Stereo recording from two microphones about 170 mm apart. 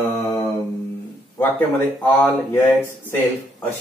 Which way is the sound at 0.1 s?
10° left (ahead or behind).